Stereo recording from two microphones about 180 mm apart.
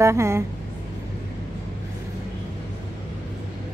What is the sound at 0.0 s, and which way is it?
Speech, 15° right (ahead or behind).